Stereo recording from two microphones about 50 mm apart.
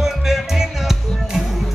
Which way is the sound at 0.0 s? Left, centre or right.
Centre.